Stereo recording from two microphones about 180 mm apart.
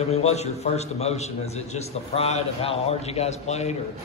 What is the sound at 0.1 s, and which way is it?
A man's voice, 35° left (ahead or behind).